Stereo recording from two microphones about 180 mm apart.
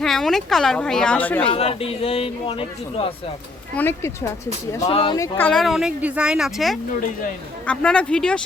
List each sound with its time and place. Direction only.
0.0 s a woman's voice: centre (ahead or behind)
1.5 s speech: 35° left (ahead or behind)
3.8 s speech: 15° left (ahead or behind)
4.9 s speech: 30° left (ahead or behind)
5.1 s speech: 15° left (ahead or behind)
5.5 s a woman's voice: centre (ahead or behind)